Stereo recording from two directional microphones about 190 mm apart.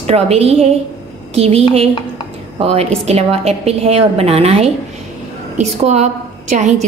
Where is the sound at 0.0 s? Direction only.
35° right (ahead or behind).